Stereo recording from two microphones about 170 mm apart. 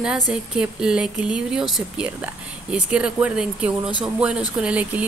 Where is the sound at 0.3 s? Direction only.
5° right (ahead or behind).